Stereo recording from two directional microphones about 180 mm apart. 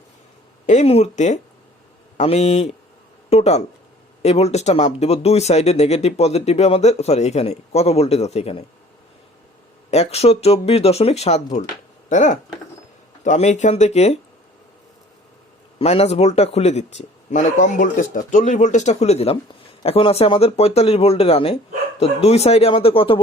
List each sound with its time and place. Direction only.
0.7 s speech: 35° left (ahead or behind)
9.9 s speech: 35° left (ahead or behind)
15.8 s speech: 35° left (ahead or behind)